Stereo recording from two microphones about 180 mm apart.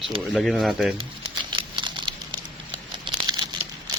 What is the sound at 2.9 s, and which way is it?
Crumpling, 25° right (ahead or behind).